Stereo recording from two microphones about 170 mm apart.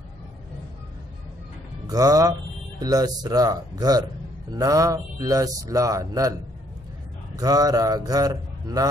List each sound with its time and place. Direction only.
1.9 s speech: 20° right (ahead or behind)
7.3 s speech: 20° right (ahead or behind)